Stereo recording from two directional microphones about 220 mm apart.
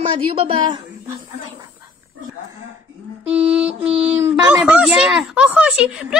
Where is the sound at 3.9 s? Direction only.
25° right (ahead or behind).